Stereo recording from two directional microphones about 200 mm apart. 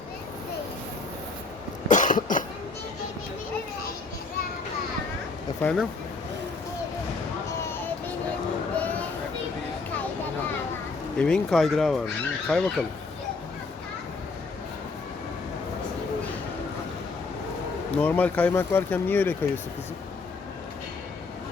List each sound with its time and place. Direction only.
1.9 s cough: 40° left (ahead or behind)
5.6 s speech: 10° left (ahead or behind)
8.7 s a sound: 5° left (ahead or behind)
11.2 s speech: 5° left (ahead or behind)
17.9 s speech: 10° left (ahead or behind)